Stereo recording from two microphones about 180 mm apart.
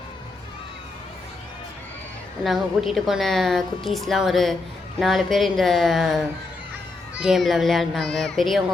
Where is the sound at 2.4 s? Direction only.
Centre (ahead or behind).